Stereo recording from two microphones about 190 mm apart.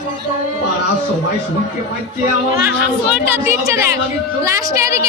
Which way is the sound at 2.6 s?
10° right (ahead or behind).